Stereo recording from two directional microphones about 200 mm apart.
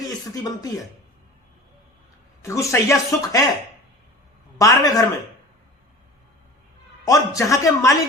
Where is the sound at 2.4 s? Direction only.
15° left (ahead or behind).